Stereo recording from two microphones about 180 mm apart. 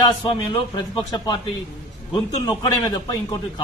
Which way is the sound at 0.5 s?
25° left (ahead or behind).